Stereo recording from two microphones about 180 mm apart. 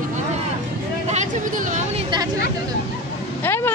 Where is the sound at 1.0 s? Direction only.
40° right (ahead or behind).